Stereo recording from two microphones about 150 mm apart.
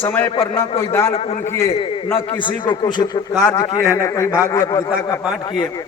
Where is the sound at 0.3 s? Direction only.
40° left (ahead or behind).